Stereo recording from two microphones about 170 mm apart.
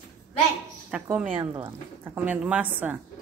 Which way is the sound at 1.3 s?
30° right (ahead or behind).